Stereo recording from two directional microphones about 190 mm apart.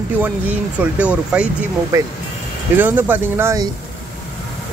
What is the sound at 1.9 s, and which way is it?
Speech, 15° right (ahead or behind).